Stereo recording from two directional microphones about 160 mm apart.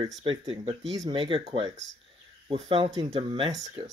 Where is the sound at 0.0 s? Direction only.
30° right (ahead or behind).